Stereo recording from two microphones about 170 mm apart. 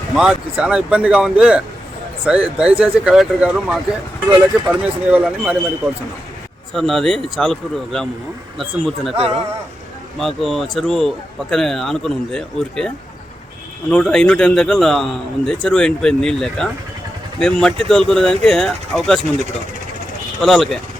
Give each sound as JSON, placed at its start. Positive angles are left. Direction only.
{"t": 0.2, "sound": "a man's voice", "side_deg": -5}
{"t": 6.7, "sound": "a man's voice", "side_deg": 0}
{"t": 9.1, "sound": "speech", "side_deg": -35}
{"t": 10.2, "sound": "a man's voice", "side_deg": 0}
{"t": 13.9, "sound": "a man's voice", "side_deg": 5}
{"t": 20.4, "sound": "a man's voice", "side_deg": 0}